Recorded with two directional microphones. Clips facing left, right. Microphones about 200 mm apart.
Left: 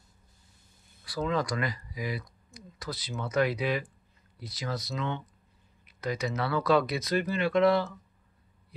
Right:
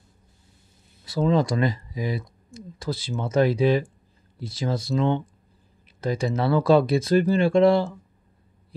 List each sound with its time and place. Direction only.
1.0 s speech: 25° right (ahead or behind)